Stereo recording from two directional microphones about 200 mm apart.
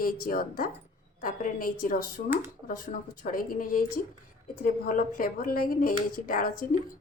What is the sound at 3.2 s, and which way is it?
Speech, 45° left (ahead or behind).